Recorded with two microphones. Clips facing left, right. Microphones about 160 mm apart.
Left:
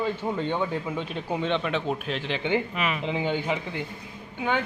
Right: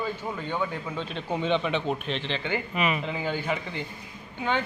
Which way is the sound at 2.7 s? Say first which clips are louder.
Right 2 dB; centre (ahead or behind).